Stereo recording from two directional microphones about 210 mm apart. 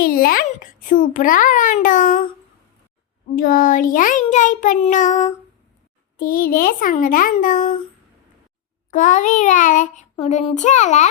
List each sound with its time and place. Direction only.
0.0 s child singing: 45° left (ahead or behind)
3.3 s child singing: 40° left (ahead or behind)
8.9 s child singing: 40° left (ahead or behind)